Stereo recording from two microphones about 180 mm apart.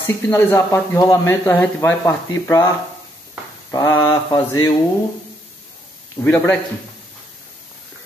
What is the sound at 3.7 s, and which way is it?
Speech, 15° left (ahead or behind).